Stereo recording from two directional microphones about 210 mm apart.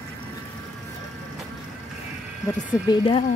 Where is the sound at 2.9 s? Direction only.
20° left (ahead or behind).